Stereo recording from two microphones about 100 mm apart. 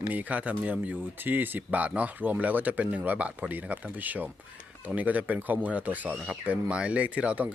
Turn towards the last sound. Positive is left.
turn(degrees=-15)  # may be behind; listen again after turning